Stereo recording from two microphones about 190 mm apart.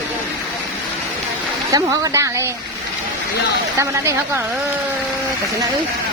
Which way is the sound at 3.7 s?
15° right (ahead or behind).